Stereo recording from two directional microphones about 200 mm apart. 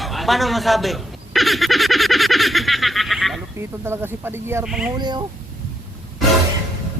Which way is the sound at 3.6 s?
10° right (ahead or behind).